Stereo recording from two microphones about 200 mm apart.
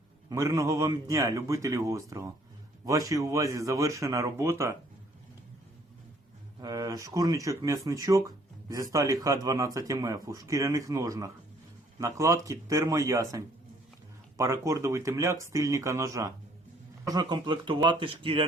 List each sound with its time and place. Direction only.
0.3 s a man's voice: 15° right (ahead or behind)
6.6 s a man's voice: 20° right (ahead or behind)